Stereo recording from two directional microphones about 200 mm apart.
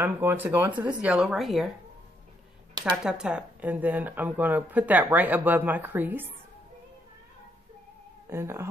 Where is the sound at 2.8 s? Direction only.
5° right (ahead or behind).